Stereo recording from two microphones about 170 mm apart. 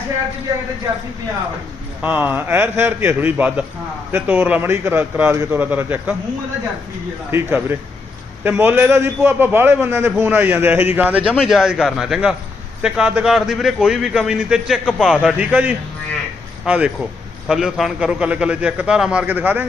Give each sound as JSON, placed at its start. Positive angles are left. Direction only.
{"t": 2.0, "sound": "a man's voice", "side_deg": -10}
{"t": 7.3, "sound": "a man's voice", "side_deg": -15}